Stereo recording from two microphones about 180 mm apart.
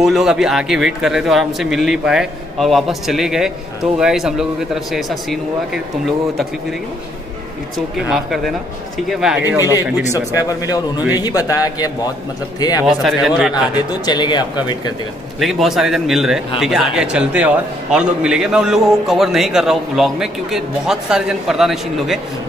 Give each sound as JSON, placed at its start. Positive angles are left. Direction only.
{"t": 0.0, "sound": "a man's voice", "side_deg": 0}
{"t": 9.2, "sound": "speech", "side_deg": -10}
{"t": 11.2, "sound": "a man's voice", "side_deg": 20}
{"t": 12.8, "sound": "a man's voice", "side_deg": 0}
{"t": 14.0, "sound": "a man's voice", "side_deg": 25}
{"t": 15.4, "sound": "a man's voice", "side_deg": 0}